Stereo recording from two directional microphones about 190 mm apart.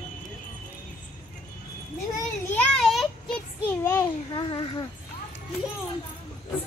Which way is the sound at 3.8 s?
15° left (ahead or behind).